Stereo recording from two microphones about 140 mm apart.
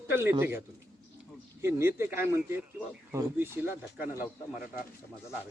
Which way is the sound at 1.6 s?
15° right (ahead or behind).